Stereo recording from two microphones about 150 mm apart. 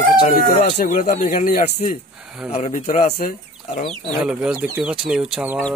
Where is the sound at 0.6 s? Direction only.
55° left (ahead or behind); by 3.3 s 80° left.